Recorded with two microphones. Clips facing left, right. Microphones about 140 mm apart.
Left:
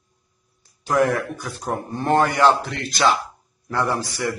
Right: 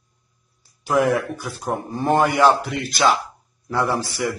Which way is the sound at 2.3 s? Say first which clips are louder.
Right 1 dB; 15° right (ahead or behind).